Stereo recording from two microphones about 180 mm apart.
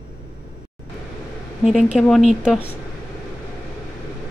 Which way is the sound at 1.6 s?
Centre (ahead or behind).